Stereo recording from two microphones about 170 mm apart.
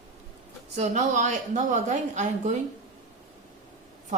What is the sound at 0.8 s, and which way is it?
A woman's voice, 45° right (ahead or behind).